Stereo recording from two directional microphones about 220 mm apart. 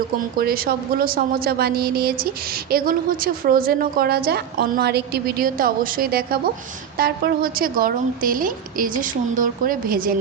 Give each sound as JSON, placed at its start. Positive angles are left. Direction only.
{"t": 0.3, "sound": "a woman's voice", "side_deg": -40}